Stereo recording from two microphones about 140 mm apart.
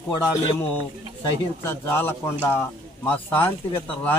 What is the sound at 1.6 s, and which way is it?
A man's voice, 20° left (ahead or behind).